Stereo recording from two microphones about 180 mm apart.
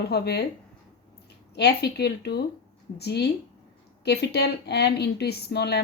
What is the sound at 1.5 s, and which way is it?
Speech, 65° left (ahead or behind).